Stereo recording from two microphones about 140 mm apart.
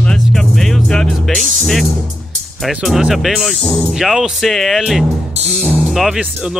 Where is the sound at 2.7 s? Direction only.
5° right (ahead or behind).